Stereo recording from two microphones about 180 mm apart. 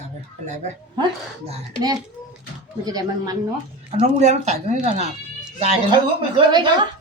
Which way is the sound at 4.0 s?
40° right (ahead or behind).